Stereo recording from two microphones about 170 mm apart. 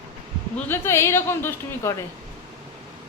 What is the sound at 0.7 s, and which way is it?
A woman's voice, 15° left (ahead or behind).